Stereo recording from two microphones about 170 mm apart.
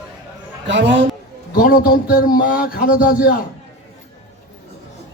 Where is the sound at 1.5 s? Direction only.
60° left (ahead or behind).